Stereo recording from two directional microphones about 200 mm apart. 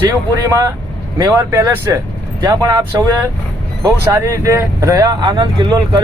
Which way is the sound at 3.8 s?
15° right (ahead or behind).